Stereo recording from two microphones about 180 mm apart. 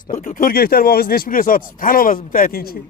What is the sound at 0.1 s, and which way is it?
Speech, 50° left (ahead or behind).